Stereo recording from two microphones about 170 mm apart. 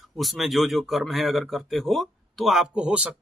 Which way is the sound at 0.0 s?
Centre (ahead or behind).